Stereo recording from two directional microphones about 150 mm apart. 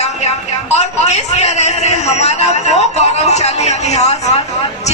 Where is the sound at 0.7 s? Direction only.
50° left (ahead or behind).